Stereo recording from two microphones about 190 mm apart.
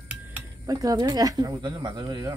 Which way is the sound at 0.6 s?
20° right (ahead or behind).